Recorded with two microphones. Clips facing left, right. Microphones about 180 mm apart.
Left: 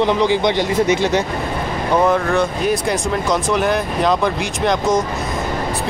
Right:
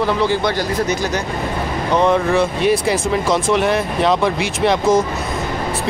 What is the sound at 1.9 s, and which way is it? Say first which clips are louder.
Speech: right 1 dB; 5° left (ahead or behind).